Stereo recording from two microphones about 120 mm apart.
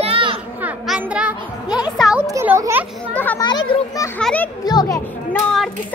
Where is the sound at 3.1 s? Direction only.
15° left (ahead or behind).